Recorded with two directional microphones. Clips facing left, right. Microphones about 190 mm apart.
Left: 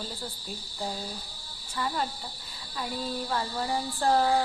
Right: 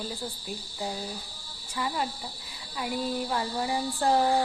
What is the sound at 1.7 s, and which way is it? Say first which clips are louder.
Speech: even; 10° right (ahead or behind).